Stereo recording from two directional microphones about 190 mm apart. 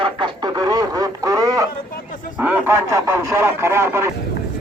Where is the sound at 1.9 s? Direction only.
45° left (ahead or behind).